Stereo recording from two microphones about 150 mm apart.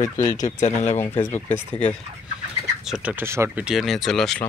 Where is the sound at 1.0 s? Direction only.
15° left (ahead or behind).